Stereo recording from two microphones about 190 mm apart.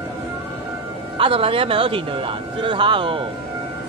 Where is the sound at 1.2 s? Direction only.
30° right (ahead or behind).